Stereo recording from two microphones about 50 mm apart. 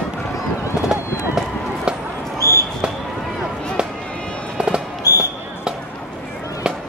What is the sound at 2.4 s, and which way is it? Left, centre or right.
Basketball bounce, left.